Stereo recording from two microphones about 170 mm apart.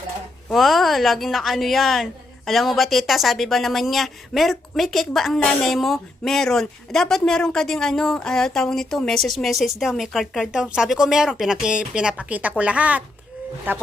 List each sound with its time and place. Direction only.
0.5 s speech: centre (ahead or behind)